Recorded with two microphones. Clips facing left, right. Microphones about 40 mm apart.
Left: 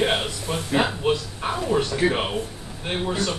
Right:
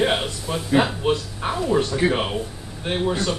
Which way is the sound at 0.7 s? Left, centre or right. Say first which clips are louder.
Right 3 dB; centre.